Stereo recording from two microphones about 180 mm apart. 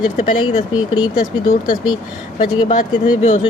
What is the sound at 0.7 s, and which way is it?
Speech, 25° left (ahead or behind).